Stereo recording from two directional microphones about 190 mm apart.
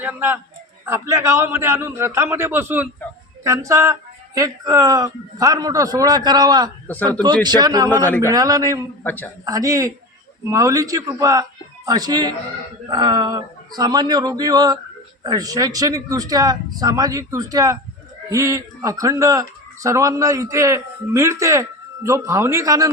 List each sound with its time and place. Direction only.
0.0 s speech: 10° right (ahead or behind)
6.8 s speech: 10° left (ahead or behind)
7.4 s speech: 20° right (ahead or behind)
8.0 s speech: 15° left (ahead or behind)
8.3 s speech: 20° right (ahead or behind)
9.0 s speech: 10° left (ahead or behind)
9.4 s speech: 20° right (ahead or behind)